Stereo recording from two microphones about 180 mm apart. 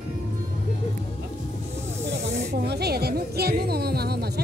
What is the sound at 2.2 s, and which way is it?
Speech, 65° right (ahead or behind).